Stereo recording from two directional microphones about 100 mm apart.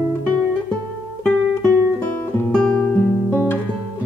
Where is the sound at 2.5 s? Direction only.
10° left (ahead or behind).